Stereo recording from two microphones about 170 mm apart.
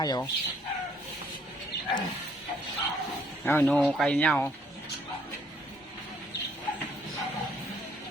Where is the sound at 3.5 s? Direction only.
10° left (ahead or behind).